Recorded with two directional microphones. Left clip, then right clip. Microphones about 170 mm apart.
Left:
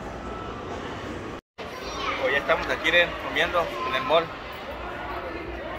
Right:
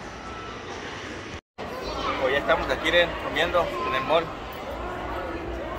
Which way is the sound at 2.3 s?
10° left (ahead or behind).